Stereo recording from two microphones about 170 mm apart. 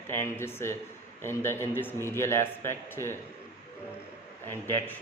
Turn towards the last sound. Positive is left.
turn(degrees=10)  # may be behind; listen again after turning